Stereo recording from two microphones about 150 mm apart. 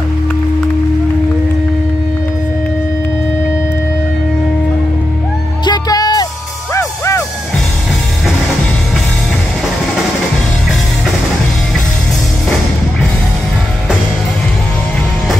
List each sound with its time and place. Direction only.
5.7 s music: 25° left (ahead or behind)